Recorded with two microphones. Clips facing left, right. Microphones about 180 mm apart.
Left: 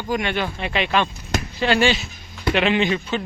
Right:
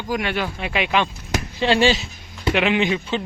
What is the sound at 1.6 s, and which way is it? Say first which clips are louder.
Speech: right 1 dB; 30° right (ahead or behind).